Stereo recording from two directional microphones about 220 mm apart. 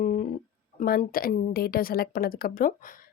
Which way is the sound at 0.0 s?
35° left (ahead or behind).